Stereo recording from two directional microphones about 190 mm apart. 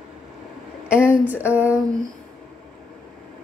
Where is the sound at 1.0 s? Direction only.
10° right (ahead or behind).